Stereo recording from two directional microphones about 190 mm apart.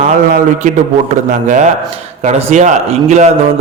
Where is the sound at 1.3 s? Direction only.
45° right (ahead or behind).